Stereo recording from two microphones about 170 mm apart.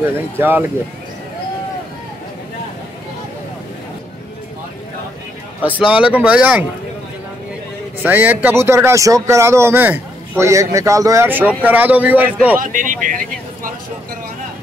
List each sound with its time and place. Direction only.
0.4 s a man's voice: 10° right (ahead or behind)
5.6 s a man's voice: 10° right (ahead or behind)
8.0 s a man's voice: 10° right (ahead or behind)
12.5 s speech: 50° right (ahead or behind)